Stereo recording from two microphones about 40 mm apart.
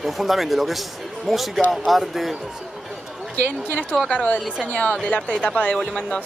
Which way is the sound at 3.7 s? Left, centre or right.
Left.